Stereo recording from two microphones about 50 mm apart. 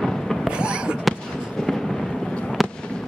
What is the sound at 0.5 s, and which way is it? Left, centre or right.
Fireworks, centre.